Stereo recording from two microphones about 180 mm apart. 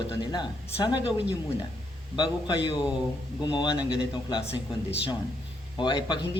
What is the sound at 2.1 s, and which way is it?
A man's voice, 25° left (ahead or behind).